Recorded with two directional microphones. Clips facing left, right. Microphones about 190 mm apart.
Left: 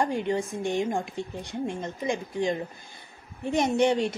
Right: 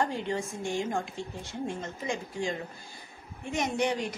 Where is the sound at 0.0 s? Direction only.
15° left (ahead or behind).